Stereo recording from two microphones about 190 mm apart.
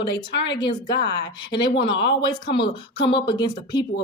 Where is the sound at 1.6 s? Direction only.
25° left (ahead or behind).